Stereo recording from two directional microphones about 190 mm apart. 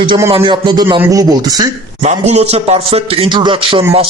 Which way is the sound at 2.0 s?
35° right (ahead or behind).